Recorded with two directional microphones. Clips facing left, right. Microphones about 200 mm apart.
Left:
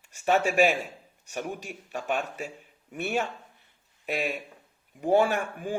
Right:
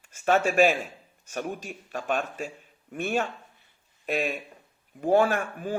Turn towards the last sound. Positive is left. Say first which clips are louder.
# right 1 dB
turn(degrees=15)  # may be behind; listen again after turning